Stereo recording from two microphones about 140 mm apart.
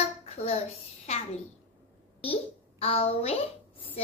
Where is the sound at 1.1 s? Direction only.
45° left (ahead or behind).